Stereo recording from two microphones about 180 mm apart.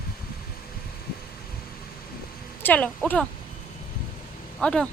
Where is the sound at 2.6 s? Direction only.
5° left (ahead or behind).